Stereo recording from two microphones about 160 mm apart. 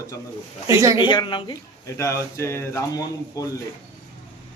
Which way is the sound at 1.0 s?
30° left (ahead or behind).